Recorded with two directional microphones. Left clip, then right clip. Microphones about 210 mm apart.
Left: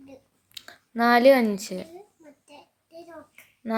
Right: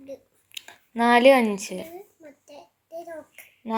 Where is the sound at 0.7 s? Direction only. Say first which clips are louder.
Right 1 dB; 40° left (ahead or behind).